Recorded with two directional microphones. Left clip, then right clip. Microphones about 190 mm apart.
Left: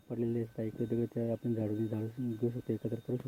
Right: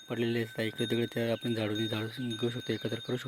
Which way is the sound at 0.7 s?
55° right (ahead or behind).